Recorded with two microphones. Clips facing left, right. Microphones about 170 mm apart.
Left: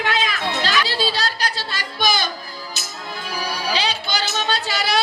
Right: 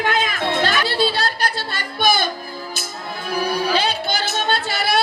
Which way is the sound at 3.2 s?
55° right (ahead or behind).